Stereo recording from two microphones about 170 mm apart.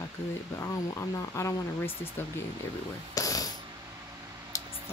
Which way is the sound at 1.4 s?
15° left (ahead or behind).